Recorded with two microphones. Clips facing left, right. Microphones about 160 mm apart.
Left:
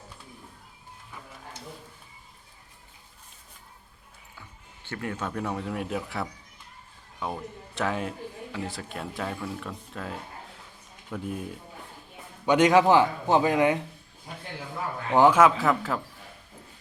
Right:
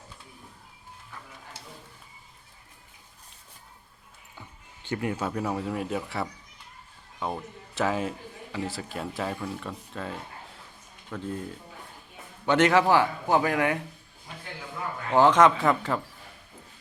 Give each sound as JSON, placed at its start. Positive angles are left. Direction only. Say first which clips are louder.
{"t": 4.9, "sound": "speech", "louder": "right 4 dB", "side_deg": -15}
{"t": 11.1, "sound": "speech", "louder": "even", "side_deg": 15}
{"t": 12.5, "sound": "a man's voice", "louder": "left 2 dB", "side_deg": 15}
{"t": 15.1, "sound": "speech", "louder": "even", "side_deg": 10}